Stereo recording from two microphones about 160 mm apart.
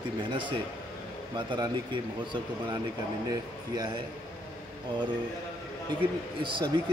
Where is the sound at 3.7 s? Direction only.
25° right (ahead or behind).